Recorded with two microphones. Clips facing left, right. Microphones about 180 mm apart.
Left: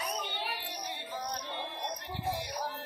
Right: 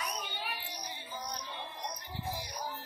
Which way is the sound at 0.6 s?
65° left (ahead or behind).